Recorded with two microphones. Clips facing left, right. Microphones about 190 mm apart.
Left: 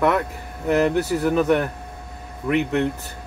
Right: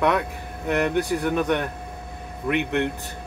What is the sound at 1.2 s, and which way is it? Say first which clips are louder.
Speech: left 4 dB; 5° left (ahead or behind).